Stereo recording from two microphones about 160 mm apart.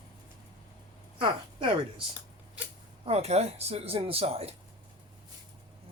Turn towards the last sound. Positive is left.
turn(degrees=-40)  # may be behind; listen again after turning